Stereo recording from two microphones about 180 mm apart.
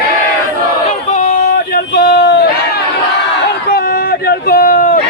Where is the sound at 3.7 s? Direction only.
60° left (ahead or behind).